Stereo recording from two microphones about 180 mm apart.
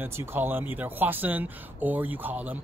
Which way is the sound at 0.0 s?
10° right (ahead or behind).